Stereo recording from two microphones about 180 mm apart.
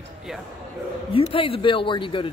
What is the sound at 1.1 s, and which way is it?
Speech, 30° left (ahead or behind).